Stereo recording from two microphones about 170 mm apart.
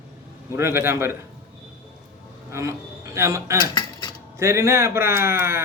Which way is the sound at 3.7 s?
25° left (ahead or behind).